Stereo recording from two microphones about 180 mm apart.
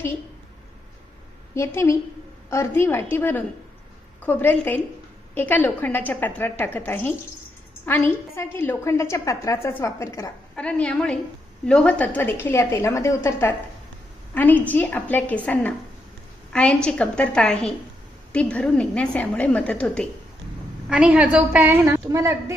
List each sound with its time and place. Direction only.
1.5 s a woman's voice: 15° left (ahead or behind)
10.5 s a woman's voice: 5° left (ahead or behind)
20.9 s a woman's voice: 5° right (ahead or behind)